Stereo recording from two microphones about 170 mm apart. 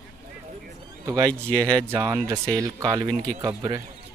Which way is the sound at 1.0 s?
20° right (ahead or behind).